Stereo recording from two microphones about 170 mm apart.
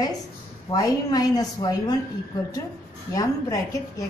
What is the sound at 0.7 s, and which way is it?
A woman's voice, 20° left (ahead or behind).